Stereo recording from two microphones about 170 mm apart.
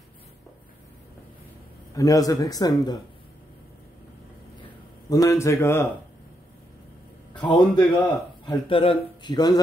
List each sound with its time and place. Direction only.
2.0 s speech: 20° left (ahead or behind)
5.1 s a man's voice: 20° left (ahead or behind)
7.4 s speech: 25° left (ahead or behind)